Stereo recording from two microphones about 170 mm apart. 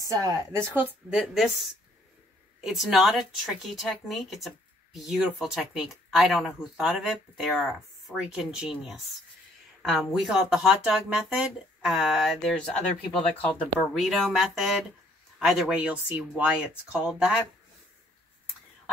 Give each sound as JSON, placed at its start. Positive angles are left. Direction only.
{"t": 0.0, "sound": "a woman's voice", "side_deg": -20}
{"t": 1.1, "sound": "a woman's voice", "side_deg": 0}
{"t": 13.7, "sound": "a woman's voice", "side_deg": 0}